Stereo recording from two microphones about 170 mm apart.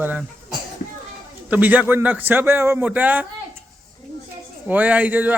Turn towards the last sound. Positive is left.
turn(degrees=-10)  # may be behind; listen again after turning